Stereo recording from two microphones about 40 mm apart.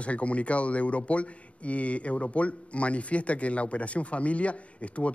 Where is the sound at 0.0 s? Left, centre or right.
Left.